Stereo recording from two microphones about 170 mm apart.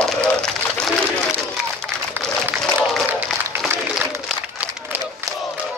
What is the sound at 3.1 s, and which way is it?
Applause, 5° right (ahead or behind).